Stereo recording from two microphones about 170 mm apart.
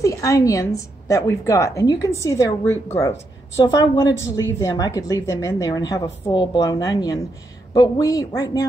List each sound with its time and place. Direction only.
0.0 s a woman's voice: 20° left (ahead or behind)